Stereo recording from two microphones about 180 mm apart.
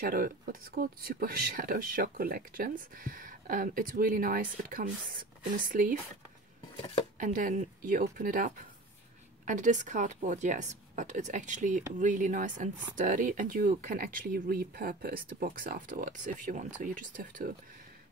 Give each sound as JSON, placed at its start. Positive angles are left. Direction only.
{"t": 0.0, "sound": "speech", "side_deg": -55}
{"t": 7.2, "sound": "speech", "side_deg": -50}